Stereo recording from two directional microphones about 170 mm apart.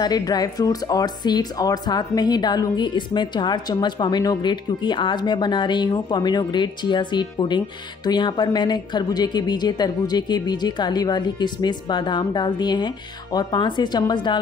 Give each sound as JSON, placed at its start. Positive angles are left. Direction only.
{"t": 0.0, "sound": "speech", "side_deg": 25}